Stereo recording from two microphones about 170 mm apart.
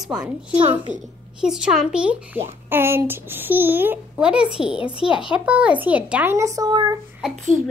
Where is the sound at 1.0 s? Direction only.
5° right (ahead or behind); by 7.0 s 25° right (ahead or behind).